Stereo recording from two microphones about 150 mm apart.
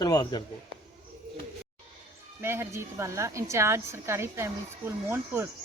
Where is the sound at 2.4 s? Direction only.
15° right (ahead or behind).